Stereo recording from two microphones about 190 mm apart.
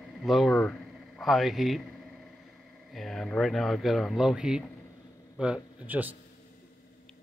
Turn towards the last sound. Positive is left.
turn(degrees=-10)  # may be behind; listen again after turning